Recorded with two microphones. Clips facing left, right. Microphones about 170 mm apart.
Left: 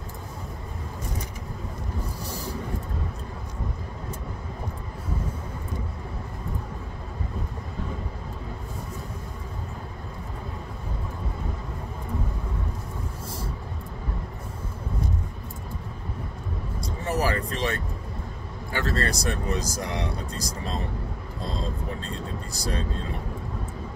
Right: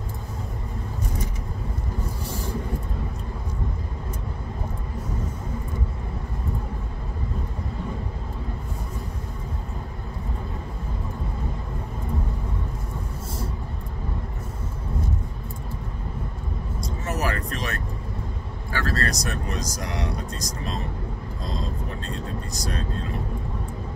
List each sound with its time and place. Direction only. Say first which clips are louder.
16.8 s vehicle: left 2 dB; 30° left (ahead or behind)
18.7 s speech: even; 20° left (ahead or behind)
22.0 s speech: right 2 dB; 30° left (ahead or behind)